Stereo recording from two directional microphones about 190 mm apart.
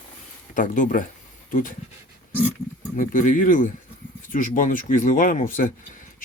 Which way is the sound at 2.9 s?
40° left (ahead or behind).